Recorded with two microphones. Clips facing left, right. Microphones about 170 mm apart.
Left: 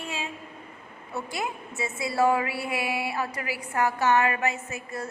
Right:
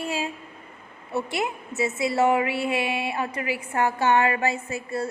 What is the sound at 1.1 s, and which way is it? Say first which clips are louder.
A woman's voice: right 5 dB; 25° right (ahead or behind).